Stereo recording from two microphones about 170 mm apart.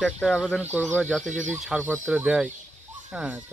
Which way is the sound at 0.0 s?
Centre (ahead or behind).